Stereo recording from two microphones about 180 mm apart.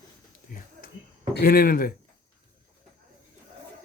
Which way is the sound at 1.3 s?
55° left (ahead or behind).